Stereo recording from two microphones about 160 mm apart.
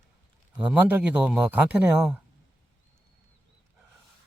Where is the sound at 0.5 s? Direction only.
5° right (ahead or behind).